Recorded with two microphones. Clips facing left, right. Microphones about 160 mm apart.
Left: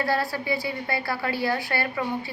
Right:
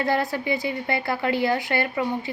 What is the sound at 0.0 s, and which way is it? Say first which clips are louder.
A woman's voice: right 2 dB; 20° right (ahead or behind).